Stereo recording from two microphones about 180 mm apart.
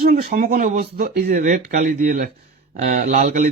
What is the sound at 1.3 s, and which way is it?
Speech, 45° right (ahead or behind).